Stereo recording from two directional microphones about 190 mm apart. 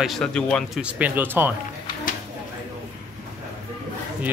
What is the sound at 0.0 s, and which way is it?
Speech, centre (ahead or behind).